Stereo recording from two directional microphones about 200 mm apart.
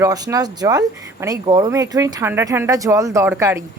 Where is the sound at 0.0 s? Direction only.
15° right (ahead or behind).